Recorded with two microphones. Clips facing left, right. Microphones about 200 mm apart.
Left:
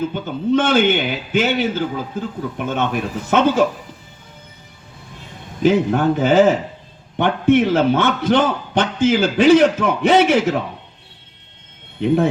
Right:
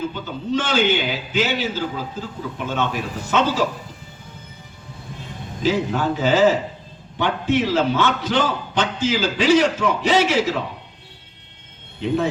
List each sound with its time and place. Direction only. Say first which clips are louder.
0.1 s a man's voice: left 6 dB; 55° left (ahead or behind)
5.6 s a man's voice: left 5 dB; 55° left (ahead or behind)
11.9 s a man's voice: left 5 dB; 55° left (ahead or behind)